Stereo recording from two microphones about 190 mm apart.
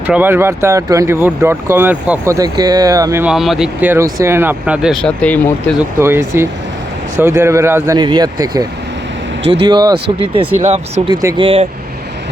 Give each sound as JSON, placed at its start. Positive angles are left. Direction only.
{"t": 0.1, "sound": "speech", "side_deg": -10}
{"t": 3.3, "sound": "speech", "side_deg": 0}
{"t": 6.0, "sound": "speech", "side_deg": -15}
{"t": 9.6, "sound": "speech", "side_deg": -20}
{"t": 11.2, "sound": "speech", "side_deg": -15}
{"t": 11.4, "sound": "speech", "side_deg": -30}